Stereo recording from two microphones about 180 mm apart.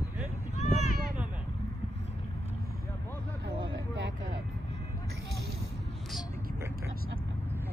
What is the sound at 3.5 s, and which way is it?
Vehicle, 75° right (ahead or behind).